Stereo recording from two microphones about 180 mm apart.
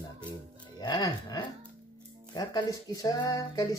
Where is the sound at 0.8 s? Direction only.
20° left (ahead or behind).